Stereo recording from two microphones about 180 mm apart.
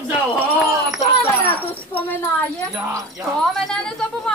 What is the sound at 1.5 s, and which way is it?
Speech, 10° left (ahead or behind).